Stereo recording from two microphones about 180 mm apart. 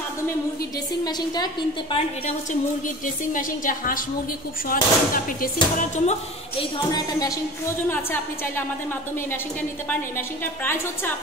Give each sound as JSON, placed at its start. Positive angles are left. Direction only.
{"t": 1.0, "sound": "a woman's voice", "side_deg": 25}
{"t": 3.3, "sound": "speech", "side_deg": 50}
{"t": 6.6, "sound": "a woman's voice", "side_deg": 20}